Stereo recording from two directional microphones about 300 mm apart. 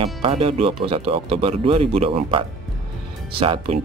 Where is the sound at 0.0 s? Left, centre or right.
Centre.